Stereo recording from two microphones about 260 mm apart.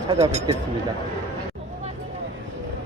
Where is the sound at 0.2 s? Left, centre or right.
Right.